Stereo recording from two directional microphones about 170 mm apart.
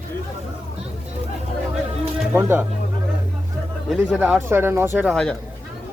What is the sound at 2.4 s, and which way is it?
Speech, 15° right (ahead or behind).